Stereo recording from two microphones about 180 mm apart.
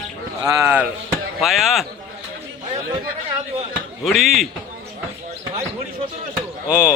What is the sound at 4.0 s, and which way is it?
Speech, centre (ahead or behind).